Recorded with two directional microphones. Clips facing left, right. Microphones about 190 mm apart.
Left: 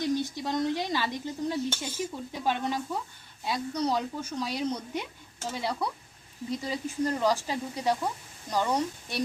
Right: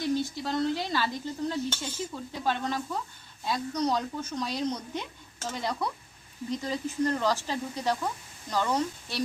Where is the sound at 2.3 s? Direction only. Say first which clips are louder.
Even; 15° left (ahead or behind).